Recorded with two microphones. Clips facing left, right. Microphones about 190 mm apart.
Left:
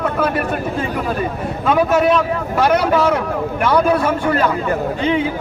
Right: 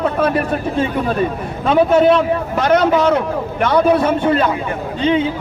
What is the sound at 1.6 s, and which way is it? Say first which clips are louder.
Speech: right 3 dB; 25° right (ahead or behind).